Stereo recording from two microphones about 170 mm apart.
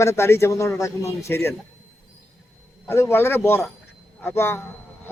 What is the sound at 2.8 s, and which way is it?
A man's voice, 15° left (ahead or behind).